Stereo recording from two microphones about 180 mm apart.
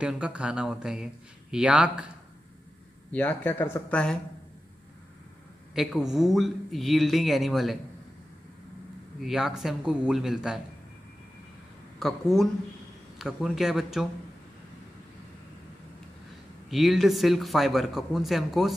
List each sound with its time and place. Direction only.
0.0 s speech: 5° right (ahead or behind)
3.1 s speech: 10° left (ahead or behind)
5.8 s speech: centre (ahead or behind)
9.2 s speech: 5° right (ahead or behind)
12.0 s speech: centre (ahead or behind)
16.7 s speech: centre (ahead or behind)